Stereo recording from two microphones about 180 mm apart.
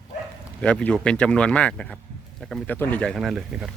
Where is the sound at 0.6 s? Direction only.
5° left (ahead or behind).